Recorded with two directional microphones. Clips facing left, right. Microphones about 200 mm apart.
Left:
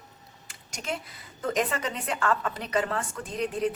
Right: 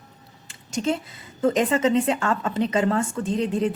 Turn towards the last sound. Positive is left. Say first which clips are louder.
# right 6 dB
turn(degrees=-25)  # may be behind; listen again after turning